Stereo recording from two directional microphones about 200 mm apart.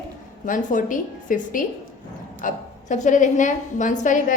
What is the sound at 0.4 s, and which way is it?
A woman's voice, 40° left (ahead or behind).